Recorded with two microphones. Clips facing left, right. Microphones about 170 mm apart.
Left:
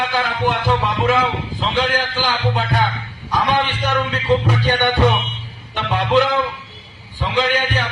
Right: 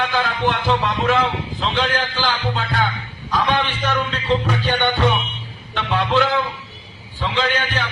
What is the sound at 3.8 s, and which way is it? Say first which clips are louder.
Music: left 3 dB; 15° left (ahead or behind).